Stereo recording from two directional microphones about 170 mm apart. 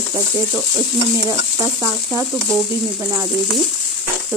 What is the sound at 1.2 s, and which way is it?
Speech, 25° right (ahead or behind).